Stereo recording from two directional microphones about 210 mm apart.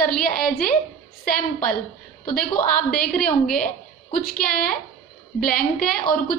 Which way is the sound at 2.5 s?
45° left (ahead or behind).